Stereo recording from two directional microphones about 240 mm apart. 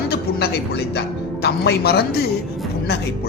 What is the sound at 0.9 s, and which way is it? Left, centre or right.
Speech, left.